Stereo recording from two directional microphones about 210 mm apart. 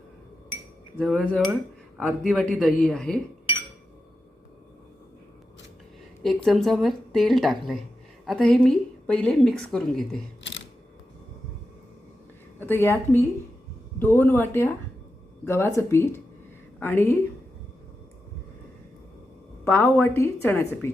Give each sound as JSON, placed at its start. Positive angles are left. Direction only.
{"t": 0.9, "sound": "a woman's voice", "side_deg": 5}
{"t": 6.2, "sound": "a woman's voice", "side_deg": 0}
{"t": 12.5, "sound": "a woman's voice", "side_deg": 10}
{"t": 19.6, "sound": "a woman's voice", "side_deg": 5}